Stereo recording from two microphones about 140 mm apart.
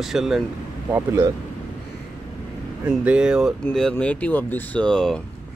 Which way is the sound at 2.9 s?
5° right (ahead or behind).